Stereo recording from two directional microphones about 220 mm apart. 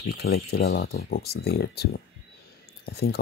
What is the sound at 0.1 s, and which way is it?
Speech, 45° left (ahead or behind).